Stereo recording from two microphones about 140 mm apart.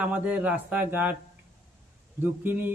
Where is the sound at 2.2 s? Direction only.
15° right (ahead or behind).